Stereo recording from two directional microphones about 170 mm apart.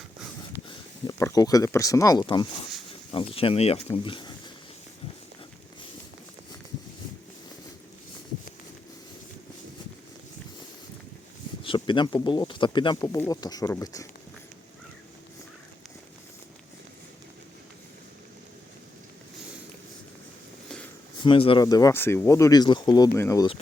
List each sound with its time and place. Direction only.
0.7 s speech: 20° left (ahead or behind)
3.9 s a sound: 30° left (ahead or behind)
11.6 s speech: 30° left (ahead or behind)
21.2 s speech: 30° left (ahead or behind)